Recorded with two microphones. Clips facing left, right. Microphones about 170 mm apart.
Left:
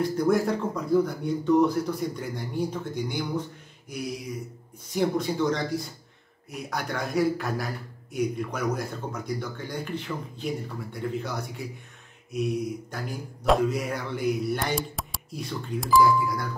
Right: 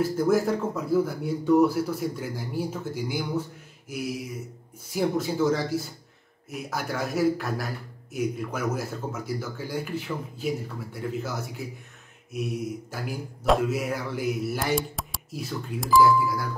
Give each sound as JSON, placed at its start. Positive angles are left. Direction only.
{"t": 0.0, "sound": "a man's voice", "side_deg": -5}